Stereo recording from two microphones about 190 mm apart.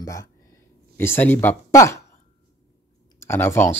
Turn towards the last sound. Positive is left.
turn(degrees=10)  # may be behind; listen again after turning